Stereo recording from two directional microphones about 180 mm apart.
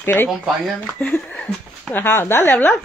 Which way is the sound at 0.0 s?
10° left (ahead or behind).